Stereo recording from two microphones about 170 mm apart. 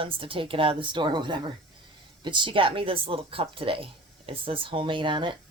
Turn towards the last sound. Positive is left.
turn(degrees=-30)  # may be behind; listen again after turning